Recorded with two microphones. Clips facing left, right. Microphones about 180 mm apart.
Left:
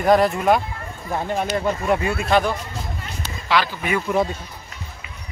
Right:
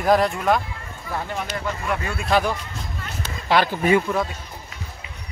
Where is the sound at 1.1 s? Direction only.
25° left (ahead or behind).